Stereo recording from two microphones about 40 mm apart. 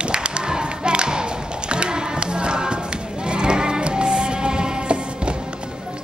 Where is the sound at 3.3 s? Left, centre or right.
Right.